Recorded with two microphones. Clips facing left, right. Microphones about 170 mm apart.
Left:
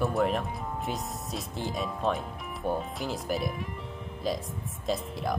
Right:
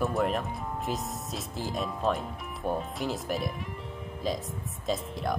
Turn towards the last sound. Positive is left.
turn(degrees=0)  # may be behind; listen again after turning